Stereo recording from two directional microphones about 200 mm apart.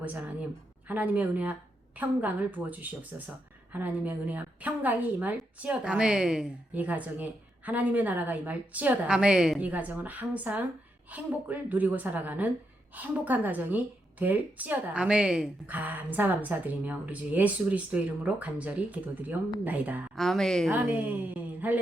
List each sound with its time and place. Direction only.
0.0 s a woman's voice: 10° right (ahead or behind)
20.1 s a woman's voice: centre (ahead or behind)
20.7 s a woman's voice: 10° right (ahead or behind)